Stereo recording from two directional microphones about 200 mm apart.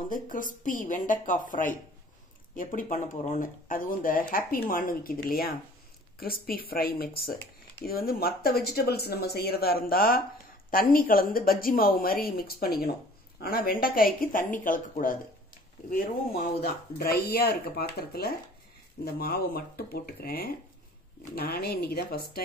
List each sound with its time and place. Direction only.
0.1 s speech: 40° left (ahead or behind)